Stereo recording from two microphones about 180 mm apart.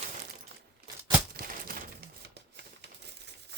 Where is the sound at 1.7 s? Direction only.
55° right (ahead or behind).